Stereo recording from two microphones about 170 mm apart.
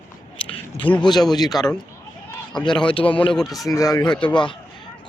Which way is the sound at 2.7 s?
30° left (ahead or behind).